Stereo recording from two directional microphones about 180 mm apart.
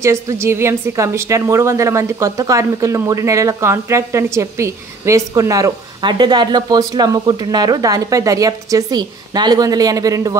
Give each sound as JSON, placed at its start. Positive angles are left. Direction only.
{"t": 0.0, "sound": "a woman's voice", "side_deg": -15}